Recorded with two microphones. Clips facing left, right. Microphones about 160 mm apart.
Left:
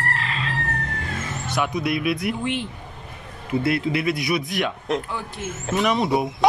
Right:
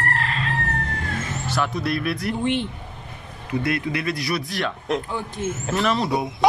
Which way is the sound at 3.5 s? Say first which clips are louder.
Left 2 dB; 25° left (ahead or behind).